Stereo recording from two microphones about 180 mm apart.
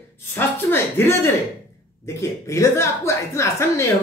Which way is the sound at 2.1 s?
15° left (ahead or behind).